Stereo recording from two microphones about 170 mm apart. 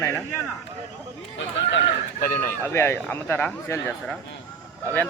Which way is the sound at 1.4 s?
90° left.